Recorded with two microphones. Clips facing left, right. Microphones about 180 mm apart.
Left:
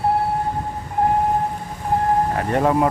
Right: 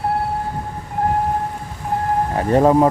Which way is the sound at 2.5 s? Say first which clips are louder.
Right 7 dB; 35° right (ahead or behind).